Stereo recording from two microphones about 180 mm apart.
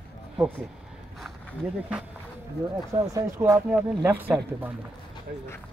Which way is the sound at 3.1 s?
15° right (ahead or behind).